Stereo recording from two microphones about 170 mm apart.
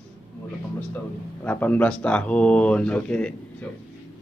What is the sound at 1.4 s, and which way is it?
Speech, 10° left (ahead or behind).